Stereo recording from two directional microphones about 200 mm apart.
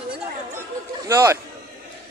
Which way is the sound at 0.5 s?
15° right (ahead or behind).